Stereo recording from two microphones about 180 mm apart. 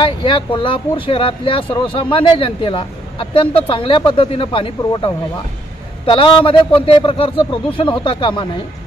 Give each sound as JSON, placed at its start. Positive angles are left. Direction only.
{"t": 0.0, "sound": "speech", "side_deg": 25}